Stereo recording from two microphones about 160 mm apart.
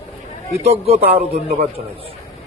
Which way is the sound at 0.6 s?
40° right (ahead or behind).